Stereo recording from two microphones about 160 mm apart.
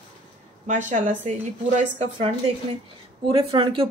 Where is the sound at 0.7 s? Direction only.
50° right (ahead or behind).